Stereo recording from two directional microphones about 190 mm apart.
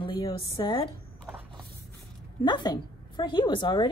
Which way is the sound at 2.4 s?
25° left (ahead or behind).